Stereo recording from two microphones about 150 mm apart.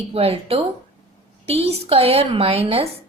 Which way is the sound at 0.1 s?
40° right (ahead or behind).